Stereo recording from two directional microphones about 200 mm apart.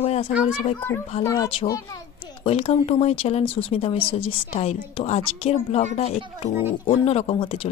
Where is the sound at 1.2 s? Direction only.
20° left (ahead or behind).